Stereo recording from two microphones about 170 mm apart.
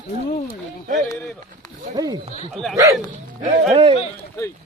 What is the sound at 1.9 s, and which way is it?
Speech, 25° right (ahead or behind).